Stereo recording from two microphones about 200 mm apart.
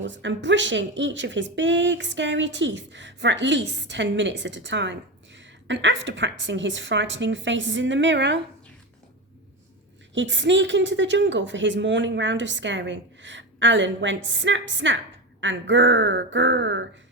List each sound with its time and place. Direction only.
0.0 s a woman's voice: 65° right (ahead or behind)
10.2 s a woman's voice: 65° right (ahead or behind)